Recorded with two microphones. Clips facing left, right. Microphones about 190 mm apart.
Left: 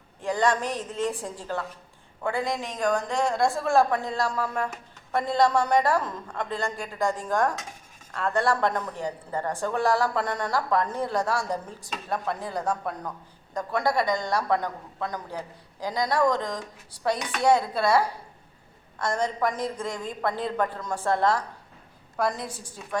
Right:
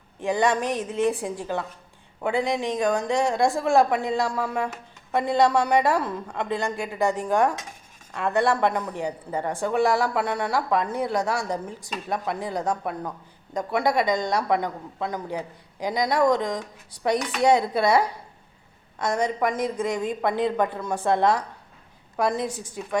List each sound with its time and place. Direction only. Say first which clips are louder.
0.2 s a man's voice: right 2 dB; 15° right (ahead or behind)